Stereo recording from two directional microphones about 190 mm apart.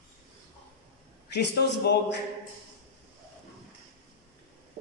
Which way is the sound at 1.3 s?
65° left (ahead or behind).